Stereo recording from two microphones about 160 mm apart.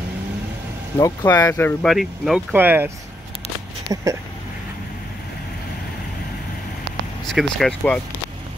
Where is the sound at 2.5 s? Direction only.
10° right (ahead or behind).